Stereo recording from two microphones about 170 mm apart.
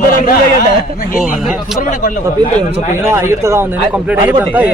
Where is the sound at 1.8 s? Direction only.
50° left (ahead or behind).